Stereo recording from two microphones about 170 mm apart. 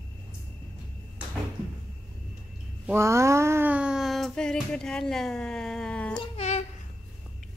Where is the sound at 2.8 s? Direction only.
15° right (ahead or behind); by 6.1 s 5° left (ahead or behind).